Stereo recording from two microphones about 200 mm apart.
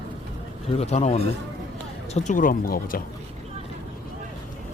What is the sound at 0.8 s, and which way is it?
A man's voice, 35° left (ahead or behind).